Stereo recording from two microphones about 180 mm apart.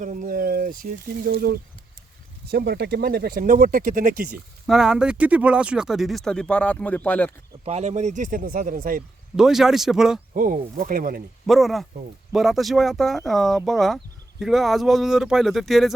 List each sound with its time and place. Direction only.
0.0 s speech: 45° right (ahead or behind)
4.6 s speech: centre (ahead or behind)
7.6 s speech: 35° right (ahead or behind)
9.3 s speech: 5° right (ahead or behind)
10.3 s speech: 50° right (ahead or behind)
11.4 s speech: centre (ahead or behind)